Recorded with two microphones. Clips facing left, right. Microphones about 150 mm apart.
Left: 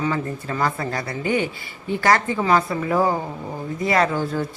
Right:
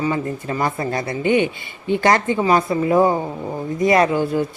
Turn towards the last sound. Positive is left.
turn(degrees=-15)  # may be behind; listen again after turning